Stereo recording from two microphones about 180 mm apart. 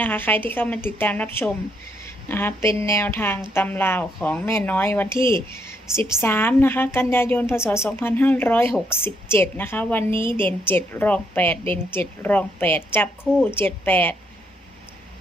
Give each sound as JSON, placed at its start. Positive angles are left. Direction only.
{"t": 0.0, "sound": "a woman's voice", "side_deg": 10}
{"t": 10.1, "sound": "a woman's voice", "side_deg": -25}
{"t": 10.7, "sound": "a woman's voice", "side_deg": 10}